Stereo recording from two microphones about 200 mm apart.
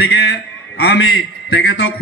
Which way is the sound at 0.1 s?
60° left (ahead or behind).